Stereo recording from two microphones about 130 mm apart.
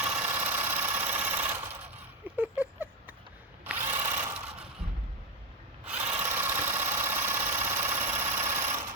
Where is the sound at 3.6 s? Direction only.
15° right (ahead or behind).